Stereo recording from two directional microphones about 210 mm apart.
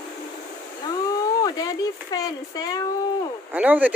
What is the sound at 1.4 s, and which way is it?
Speech, 20° left (ahead or behind).